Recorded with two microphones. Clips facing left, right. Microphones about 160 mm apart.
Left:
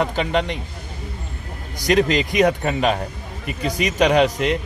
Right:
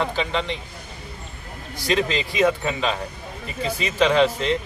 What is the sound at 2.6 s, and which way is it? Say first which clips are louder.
Speech: left 4 dB; 55° left (ahead or behind).